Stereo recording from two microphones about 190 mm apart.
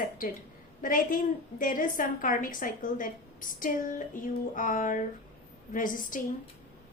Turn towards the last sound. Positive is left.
turn(degrees=45)  # may be behind; listen again after turning